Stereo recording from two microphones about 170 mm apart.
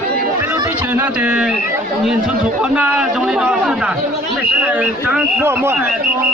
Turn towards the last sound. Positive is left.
turn(degrees=-15)  # may be behind; listen again after turning